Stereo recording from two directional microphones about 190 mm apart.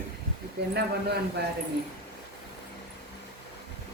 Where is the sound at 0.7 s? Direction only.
60° right (ahead or behind).